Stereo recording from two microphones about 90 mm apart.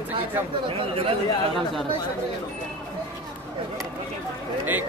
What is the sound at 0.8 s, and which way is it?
Speech, 90° right.